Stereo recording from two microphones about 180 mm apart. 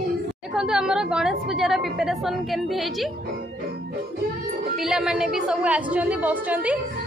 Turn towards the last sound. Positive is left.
turn(degrees=-10)  # may be behind; listen again after turning